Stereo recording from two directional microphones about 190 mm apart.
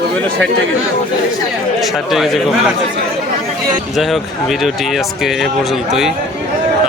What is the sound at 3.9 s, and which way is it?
Speech, centre (ahead or behind).